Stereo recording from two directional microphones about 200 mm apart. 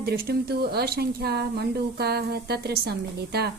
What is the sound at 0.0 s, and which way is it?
Speech, 50° right (ahead or behind).